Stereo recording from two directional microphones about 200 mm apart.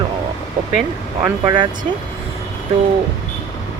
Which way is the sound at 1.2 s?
20° right (ahead or behind).